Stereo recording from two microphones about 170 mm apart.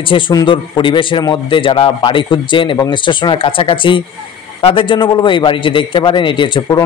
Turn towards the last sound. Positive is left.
turn(degrees=25)  # may be behind; listen again after turning